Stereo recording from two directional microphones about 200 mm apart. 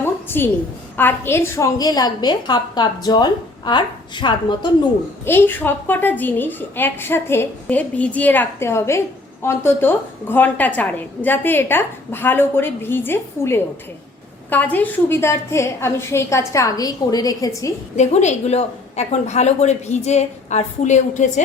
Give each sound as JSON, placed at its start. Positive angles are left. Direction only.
{"t": 0.0, "sound": "a sound", "side_deg": 10}
{"t": 0.9, "sound": "a woman's voice", "side_deg": 10}
{"t": 5.2, "sound": "a woman's voice", "side_deg": 10}
{"t": 17.9, "sound": "a woman's voice", "side_deg": 35}